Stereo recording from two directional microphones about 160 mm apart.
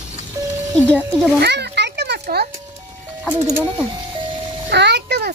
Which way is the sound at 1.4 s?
90° right.